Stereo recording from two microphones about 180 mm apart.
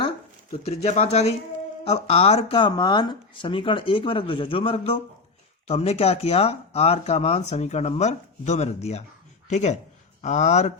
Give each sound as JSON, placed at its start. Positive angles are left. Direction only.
{"t": 0.5, "sound": "speech", "side_deg": 35}